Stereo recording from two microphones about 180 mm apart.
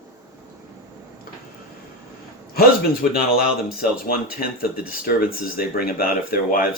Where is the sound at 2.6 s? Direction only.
55° left (ahead or behind).